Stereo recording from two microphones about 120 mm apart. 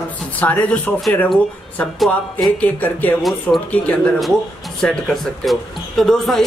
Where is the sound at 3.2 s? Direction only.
Centre (ahead or behind).